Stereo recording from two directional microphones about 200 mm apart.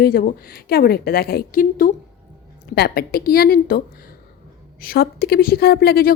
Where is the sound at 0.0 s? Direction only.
45° left (ahead or behind).